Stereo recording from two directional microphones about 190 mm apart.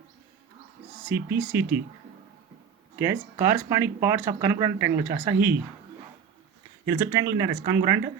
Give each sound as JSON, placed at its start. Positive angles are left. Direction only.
{"t": 1.0, "sound": "speech", "side_deg": -10}
{"t": 3.0, "sound": "speech", "side_deg": -15}
{"t": 6.8, "sound": "speech", "side_deg": -15}